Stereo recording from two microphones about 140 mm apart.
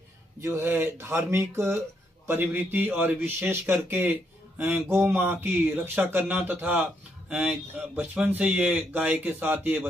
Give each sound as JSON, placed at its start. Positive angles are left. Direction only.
{"t": 0.4, "sound": "speech", "side_deg": -20}